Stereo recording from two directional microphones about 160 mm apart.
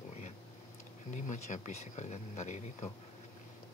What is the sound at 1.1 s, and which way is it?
Speech, 50° left (ahead or behind).